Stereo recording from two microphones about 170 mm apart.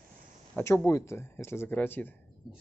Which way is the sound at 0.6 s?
15° left (ahead or behind).